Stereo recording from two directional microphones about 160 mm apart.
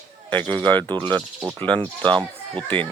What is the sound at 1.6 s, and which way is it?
Speech, 10° left (ahead or behind).